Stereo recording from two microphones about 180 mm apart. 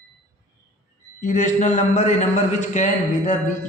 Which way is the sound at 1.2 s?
45° left (ahead or behind).